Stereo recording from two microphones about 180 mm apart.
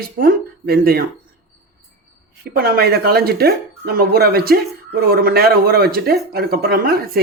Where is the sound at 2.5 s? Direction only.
60° right (ahead or behind).